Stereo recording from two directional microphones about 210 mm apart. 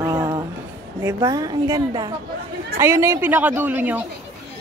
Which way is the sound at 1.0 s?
15° right (ahead or behind).